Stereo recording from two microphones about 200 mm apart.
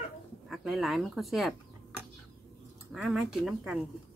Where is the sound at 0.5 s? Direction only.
Centre (ahead or behind).